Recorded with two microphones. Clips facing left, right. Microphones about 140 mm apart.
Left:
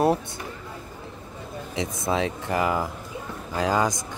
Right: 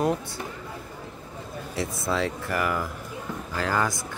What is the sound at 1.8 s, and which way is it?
Speech, 20° left (ahead or behind).